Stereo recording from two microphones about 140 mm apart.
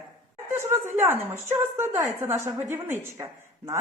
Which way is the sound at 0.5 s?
15° right (ahead or behind).